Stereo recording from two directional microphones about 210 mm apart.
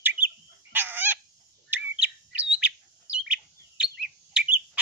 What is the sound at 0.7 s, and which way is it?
Fowl, 10° right (ahead or behind).